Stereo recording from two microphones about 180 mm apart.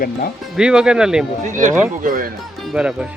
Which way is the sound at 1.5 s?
45° right (ahead or behind).